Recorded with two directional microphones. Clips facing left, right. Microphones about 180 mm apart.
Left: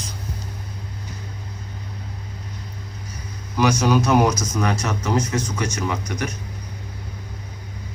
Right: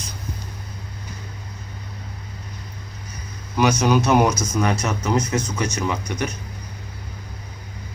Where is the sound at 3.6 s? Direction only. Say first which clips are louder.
Even; 20° right (ahead or behind).